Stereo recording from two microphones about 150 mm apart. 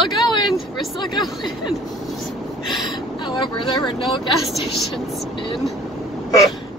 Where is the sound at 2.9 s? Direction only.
30° left (ahead or behind).